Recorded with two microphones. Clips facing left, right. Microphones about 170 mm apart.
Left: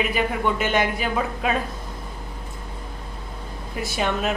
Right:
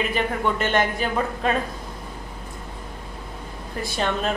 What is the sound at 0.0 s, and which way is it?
Speech, 10° left (ahead or behind).